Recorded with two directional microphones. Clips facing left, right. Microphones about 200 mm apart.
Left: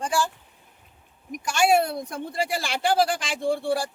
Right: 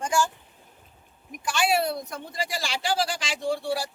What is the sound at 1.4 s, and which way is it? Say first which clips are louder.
A man's voice: left 4 dB; 45° left (ahead or behind).